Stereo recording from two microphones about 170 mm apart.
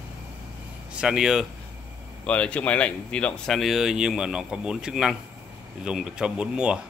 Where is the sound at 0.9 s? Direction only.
5° right (ahead or behind).